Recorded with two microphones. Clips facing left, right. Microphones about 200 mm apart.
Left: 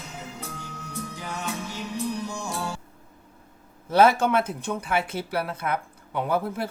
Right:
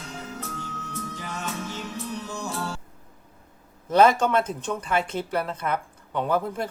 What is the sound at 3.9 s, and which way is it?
Speech, 10° left (ahead or behind).